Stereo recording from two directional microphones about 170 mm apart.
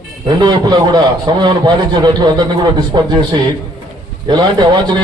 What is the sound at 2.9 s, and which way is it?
Speech, 25° right (ahead or behind).